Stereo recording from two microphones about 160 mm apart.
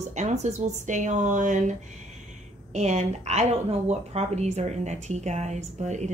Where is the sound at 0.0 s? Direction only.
45° right (ahead or behind).